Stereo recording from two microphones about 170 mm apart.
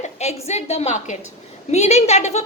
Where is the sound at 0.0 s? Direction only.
40° left (ahead or behind).